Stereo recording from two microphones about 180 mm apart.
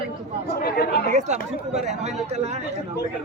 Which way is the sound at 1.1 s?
40° right (ahead or behind).